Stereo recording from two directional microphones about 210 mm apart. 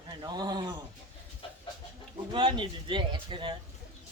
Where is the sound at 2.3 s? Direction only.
20° right (ahead or behind).